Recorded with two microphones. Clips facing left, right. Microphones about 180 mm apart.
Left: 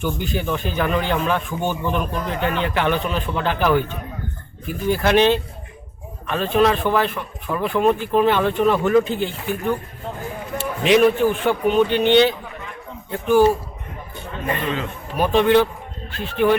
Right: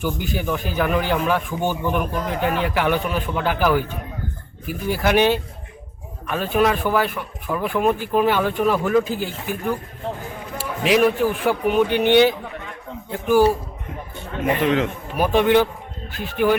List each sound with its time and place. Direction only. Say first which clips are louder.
0.0 s speech: left 1 dB; 10° right (ahead or behind)
10.8 s speech: left 2 dB; 5° right (ahead or behind)
14.4 s speech: right 5 dB; 75° right (ahead or behind)
15.2 s speech: left 1 dB; 10° right (ahead or behind)